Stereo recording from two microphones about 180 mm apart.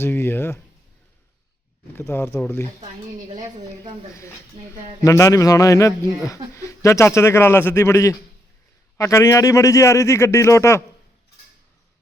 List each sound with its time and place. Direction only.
0.0 s speech: 10° left (ahead or behind)
2.0 s speech: 15° left (ahead or behind)
3.3 s a woman's voice: 25° right (ahead or behind)
5.0 s speech: 20° left (ahead or behind)